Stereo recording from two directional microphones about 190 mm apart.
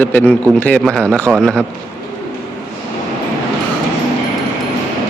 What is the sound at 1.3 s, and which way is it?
Mantra, 5° left (ahead or behind).